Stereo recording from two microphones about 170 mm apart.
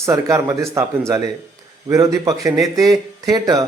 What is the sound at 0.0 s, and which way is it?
A man's voice, 20° right (ahead or behind).